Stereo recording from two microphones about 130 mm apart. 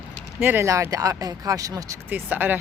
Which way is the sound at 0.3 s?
20° right (ahead or behind).